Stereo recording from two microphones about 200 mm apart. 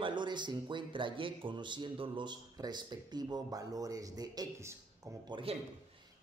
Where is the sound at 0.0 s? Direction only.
25° right (ahead or behind).